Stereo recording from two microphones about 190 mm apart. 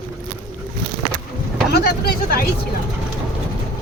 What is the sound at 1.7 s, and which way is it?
Speech, 55° left (ahead or behind).